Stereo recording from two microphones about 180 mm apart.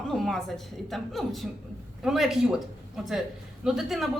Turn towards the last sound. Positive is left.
turn(degrees=0)  # may be behind; listen again after turning